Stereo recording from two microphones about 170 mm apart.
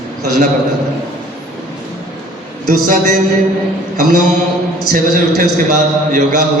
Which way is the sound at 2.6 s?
50° right (ahead or behind).